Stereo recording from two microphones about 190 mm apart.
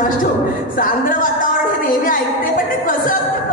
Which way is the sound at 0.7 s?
45° left (ahead or behind).